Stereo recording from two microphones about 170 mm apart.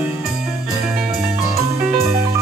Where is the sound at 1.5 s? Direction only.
15° right (ahead or behind).